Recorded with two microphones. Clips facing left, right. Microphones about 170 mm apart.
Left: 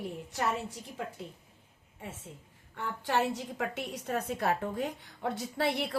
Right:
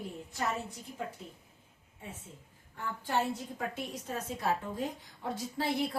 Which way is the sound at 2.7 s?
75° left (ahead or behind).